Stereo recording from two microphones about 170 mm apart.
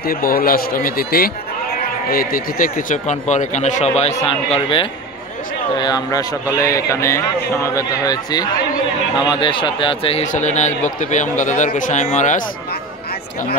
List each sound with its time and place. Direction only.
0.0 s a man's voice: 60° left (ahead or behind); by 10.2 s 30° left (ahead or behind)
10.2 s speech: 45° left (ahead or behind)